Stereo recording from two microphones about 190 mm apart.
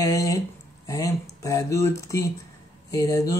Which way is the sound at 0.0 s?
15° left (ahead or behind).